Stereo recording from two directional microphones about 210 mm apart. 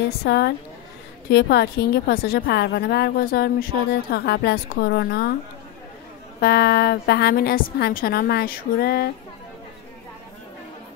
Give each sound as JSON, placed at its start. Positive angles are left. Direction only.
{"t": 0.2, "sound": "a woman's voice", "side_deg": 50}
{"t": 6.4, "sound": "a woman's voice", "side_deg": 50}